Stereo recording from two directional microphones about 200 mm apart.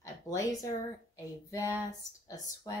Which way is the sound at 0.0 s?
15° left (ahead or behind).